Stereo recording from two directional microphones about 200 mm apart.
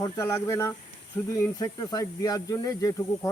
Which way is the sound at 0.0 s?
15° left (ahead or behind).